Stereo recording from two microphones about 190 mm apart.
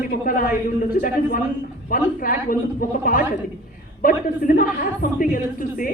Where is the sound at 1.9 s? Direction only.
50° left (ahead or behind).